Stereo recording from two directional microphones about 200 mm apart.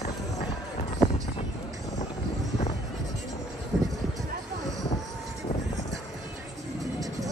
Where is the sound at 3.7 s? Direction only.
Centre (ahead or behind).